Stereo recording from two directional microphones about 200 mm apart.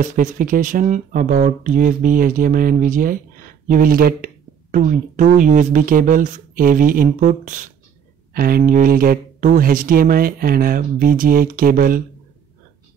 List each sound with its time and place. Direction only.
0.0 s speech: 40° right (ahead or behind)